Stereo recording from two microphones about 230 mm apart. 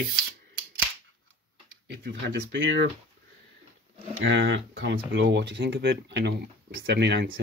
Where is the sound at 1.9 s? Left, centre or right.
Right.